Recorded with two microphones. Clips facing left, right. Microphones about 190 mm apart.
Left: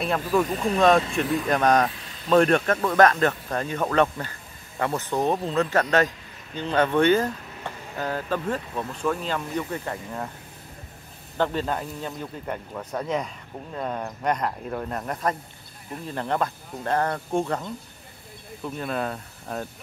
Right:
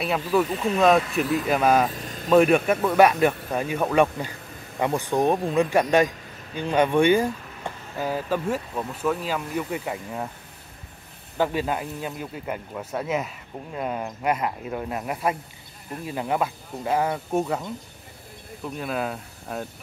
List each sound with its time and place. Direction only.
0.0 s a man's voice: 5° right (ahead or behind)
11.3 s a man's voice: 10° right (ahead or behind)
18.8 s speech: 5° right (ahead or behind)